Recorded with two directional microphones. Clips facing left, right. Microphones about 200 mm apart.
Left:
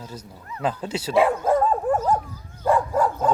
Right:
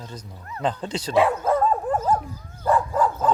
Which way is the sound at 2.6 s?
10° left (ahead or behind).